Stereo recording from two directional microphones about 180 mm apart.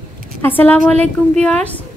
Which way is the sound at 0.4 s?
10° left (ahead or behind).